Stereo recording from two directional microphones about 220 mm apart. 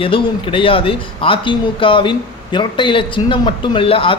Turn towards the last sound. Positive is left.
turn(degrees=25)  # may be behind; listen again after turning